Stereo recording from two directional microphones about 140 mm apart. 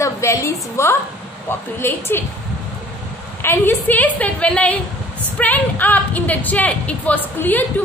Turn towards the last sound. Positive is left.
turn(degrees=15)  # may be behind; listen again after turning